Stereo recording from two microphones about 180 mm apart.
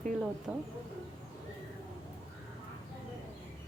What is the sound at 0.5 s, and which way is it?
Speech, 5° right (ahead or behind).